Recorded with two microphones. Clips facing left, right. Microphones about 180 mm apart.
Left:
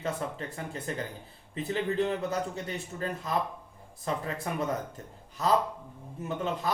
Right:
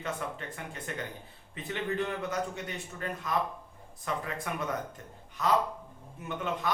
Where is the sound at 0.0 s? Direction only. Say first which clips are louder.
Left 3 dB; 35° left (ahead or behind).